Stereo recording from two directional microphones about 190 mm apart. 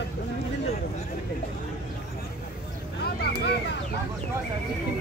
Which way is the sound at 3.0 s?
60° left (ahead or behind).